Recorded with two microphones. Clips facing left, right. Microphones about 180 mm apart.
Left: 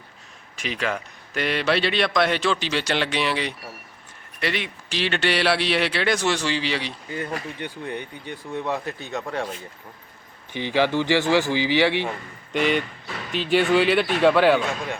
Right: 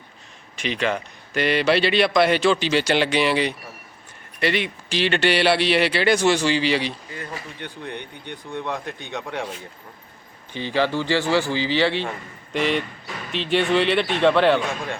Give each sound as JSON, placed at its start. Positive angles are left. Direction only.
{"t": 0.5, "sound": "a man's voice", "side_deg": 5}
{"t": 10.5, "sound": "speech", "side_deg": 15}
{"t": 12.5, "sound": "a man's voice", "side_deg": 0}